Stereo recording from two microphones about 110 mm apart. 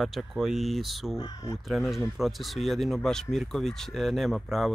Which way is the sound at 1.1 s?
35° left (ahead or behind).